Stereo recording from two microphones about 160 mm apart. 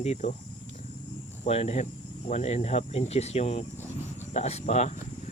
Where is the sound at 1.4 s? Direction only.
40° left (ahead or behind).